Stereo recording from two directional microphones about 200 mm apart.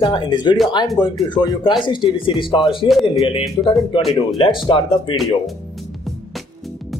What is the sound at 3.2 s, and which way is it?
Speech, 30° left (ahead or behind).